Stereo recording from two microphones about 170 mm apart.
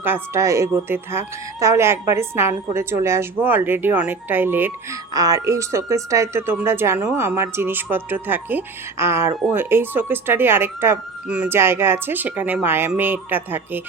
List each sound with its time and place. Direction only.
0.0 s speech: 15° right (ahead or behind)